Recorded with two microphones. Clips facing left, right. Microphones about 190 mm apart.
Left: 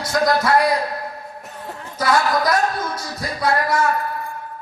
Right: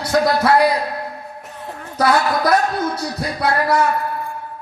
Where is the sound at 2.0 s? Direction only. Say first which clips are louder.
Right 2 dB; 60° right (ahead or behind).